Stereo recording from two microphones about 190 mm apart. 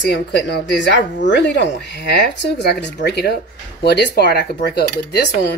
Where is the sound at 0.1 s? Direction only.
65° left (ahead or behind).